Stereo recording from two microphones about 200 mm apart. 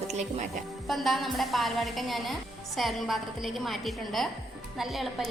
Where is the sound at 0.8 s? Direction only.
Centre (ahead or behind).